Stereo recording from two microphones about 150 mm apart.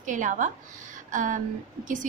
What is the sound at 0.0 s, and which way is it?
A woman's voice, 55° right (ahead or behind).